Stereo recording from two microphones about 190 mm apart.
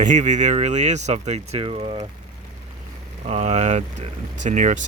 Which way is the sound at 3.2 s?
35° right (ahead or behind).